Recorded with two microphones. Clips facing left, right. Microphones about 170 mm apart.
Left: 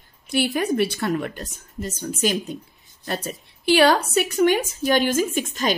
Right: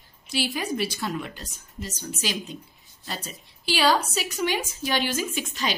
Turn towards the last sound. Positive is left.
turn(degrees=50)  # may be behind; listen again after turning